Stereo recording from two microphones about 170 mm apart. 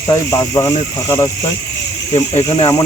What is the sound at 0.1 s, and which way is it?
Speech, 20° left (ahead or behind).